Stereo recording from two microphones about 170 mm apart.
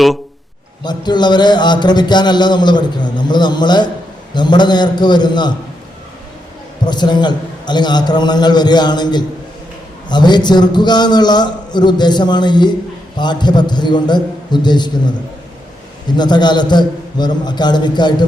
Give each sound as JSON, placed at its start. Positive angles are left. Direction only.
{"t": 0.9, "sound": "speech", "side_deg": 25}
{"t": 6.8, "sound": "speech", "side_deg": 25}